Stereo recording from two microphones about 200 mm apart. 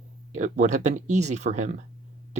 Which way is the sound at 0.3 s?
35° right (ahead or behind).